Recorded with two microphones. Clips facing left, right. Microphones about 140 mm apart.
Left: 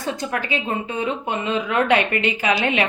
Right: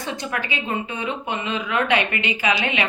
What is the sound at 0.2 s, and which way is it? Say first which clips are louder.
A woman's voice: left 3 dB; 40° left (ahead or behind).